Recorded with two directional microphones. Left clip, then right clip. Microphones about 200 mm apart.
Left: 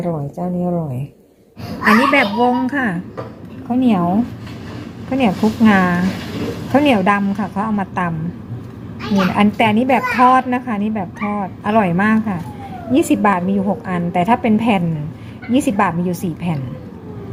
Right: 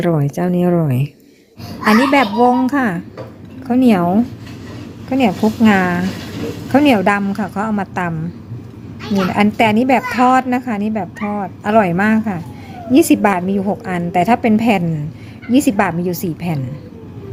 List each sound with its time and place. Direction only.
0.0 s speech: 45° right (ahead or behind)
1.8 s a woman's voice: 20° right (ahead or behind)